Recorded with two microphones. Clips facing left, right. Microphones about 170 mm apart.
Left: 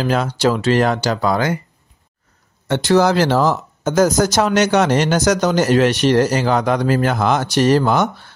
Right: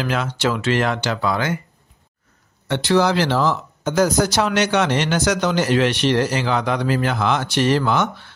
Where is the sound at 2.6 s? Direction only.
45° left (ahead or behind).